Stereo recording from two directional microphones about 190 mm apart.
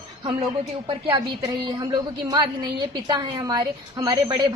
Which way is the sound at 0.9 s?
25° right (ahead or behind).